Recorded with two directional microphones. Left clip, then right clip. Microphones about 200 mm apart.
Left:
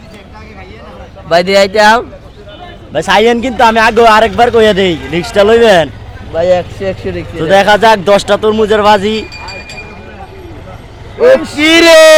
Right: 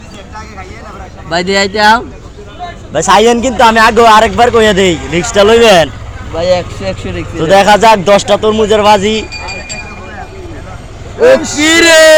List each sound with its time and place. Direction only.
1.3 s speech: 45° left (ahead or behind)
2.9 s a man's voice: 15° left (ahead or behind)
6.3 s speech: 40° left (ahead or behind)
7.4 s a man's voice: 10° left (ahead or behind)
11.5 s speech: 35° left (ahead or behind)